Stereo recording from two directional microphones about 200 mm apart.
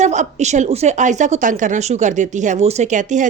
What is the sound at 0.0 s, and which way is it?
A woman's voice, 35° right (ahead or behind).